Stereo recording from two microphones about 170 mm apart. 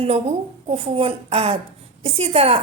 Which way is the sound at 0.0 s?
35° right (ahead or behind).